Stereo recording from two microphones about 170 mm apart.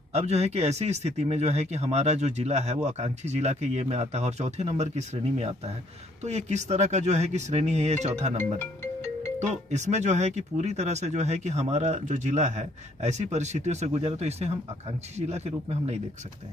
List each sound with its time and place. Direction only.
0.1 s speech: 40° right (ahead or behind)
9.7 s speech: 45° right (ahead or behind)